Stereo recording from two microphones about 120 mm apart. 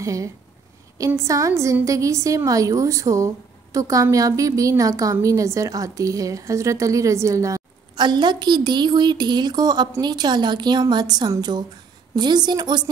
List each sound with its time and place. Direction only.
0.0 s a woman's voice: 25° right (ahead or behind)